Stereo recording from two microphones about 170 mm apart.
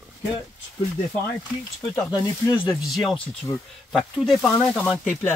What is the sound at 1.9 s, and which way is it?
Speech, 25° left (ahead or behind).